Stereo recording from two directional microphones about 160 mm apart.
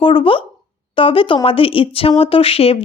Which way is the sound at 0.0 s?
35° left (ahead or behind).